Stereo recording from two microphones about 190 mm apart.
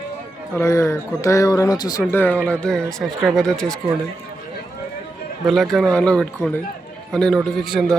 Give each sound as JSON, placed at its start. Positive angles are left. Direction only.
{"t": 0.5, "sound": "speech", "side_deg": 15}
{"t": 5.5, "sound": "speech", "side_deg": 0}